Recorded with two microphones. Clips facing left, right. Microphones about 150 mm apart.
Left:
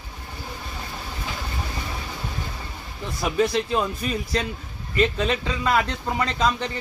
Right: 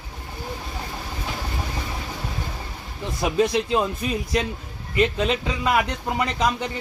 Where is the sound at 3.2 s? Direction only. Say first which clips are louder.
Right 1 dB; 20° right (ahead or behind).